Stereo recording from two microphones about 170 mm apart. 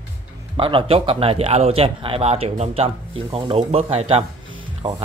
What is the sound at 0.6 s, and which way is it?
Speech, 30° right (ahead or behind).